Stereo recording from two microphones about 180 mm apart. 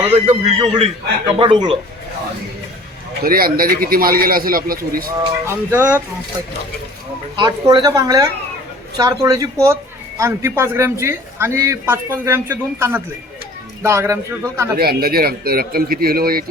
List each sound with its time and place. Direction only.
0.1 s a man's voice: 35° right (ahead or behind)
3.2 s a man's voice: 55° right (ahead or behind)
5.5 s a man's voice: 10° right (ahead or behind)
7.3 s a woman's voice: 25° right (ahead or behind)
14.8 s a man's voice: 60° right (ahead or behind)